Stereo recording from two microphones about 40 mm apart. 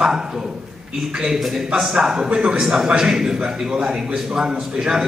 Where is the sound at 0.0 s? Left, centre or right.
Centre.